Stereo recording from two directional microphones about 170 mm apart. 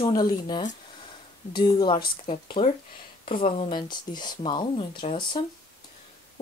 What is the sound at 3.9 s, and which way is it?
Speech, 25° left (ahead or behind).